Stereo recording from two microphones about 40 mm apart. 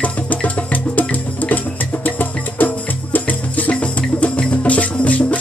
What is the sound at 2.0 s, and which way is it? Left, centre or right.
Music, left.